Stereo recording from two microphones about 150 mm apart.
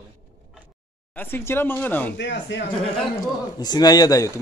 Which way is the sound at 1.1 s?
15° left (ahead or behind).